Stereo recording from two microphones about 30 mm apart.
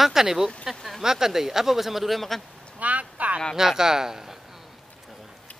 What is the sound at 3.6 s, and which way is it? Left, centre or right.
Speech, centre.